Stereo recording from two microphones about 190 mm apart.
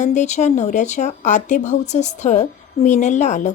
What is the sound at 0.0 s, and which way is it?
Speech, 40° left (ahead or behind).